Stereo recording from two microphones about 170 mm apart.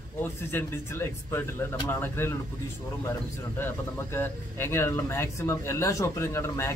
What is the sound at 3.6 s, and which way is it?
Speech, 15° left (ahead or behind).